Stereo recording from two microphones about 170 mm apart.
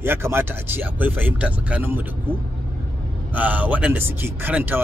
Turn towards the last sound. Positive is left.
turn(degrees=-10)  # may be behind; listen again after turning